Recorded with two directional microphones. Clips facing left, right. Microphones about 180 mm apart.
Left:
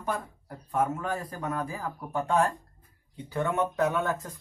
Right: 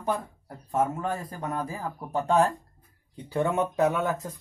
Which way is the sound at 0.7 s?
25° right (ahead or behind).